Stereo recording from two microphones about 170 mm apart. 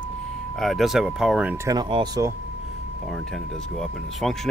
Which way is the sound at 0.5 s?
Centre (ahead or behind).